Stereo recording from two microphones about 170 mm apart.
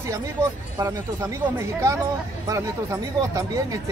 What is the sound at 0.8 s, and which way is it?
Speech, 15° right (ahead or behind).